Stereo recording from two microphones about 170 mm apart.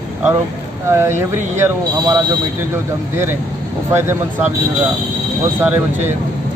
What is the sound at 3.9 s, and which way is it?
Speech, 15° right (ahead or behind).